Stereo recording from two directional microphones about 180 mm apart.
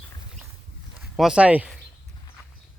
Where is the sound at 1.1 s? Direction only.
5° right (ahead or behind).